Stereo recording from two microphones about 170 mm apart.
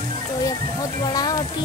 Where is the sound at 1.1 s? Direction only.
20° left (ahead or behind).